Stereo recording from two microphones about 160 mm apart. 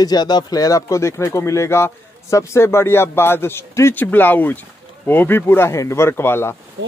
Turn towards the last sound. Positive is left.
turn(degrees=15)  # may be behind; listen again after turning